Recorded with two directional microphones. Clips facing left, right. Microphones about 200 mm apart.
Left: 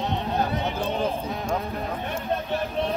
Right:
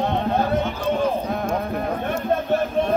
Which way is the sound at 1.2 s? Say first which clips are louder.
Right 4 dB; 55° right (ahead or behind).